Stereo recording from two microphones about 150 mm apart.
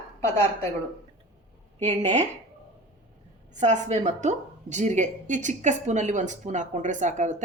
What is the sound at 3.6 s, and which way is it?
A woman's voice, 50° right (ahead or behind).